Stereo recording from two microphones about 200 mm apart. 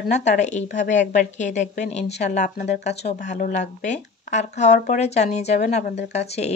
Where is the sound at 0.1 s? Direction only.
35° left (ahead or behind).